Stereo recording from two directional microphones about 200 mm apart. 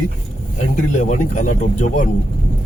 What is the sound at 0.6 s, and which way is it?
Speech, 40° left (ahead or behind).